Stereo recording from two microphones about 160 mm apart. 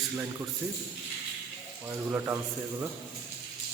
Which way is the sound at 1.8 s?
15° right (ahead or behind).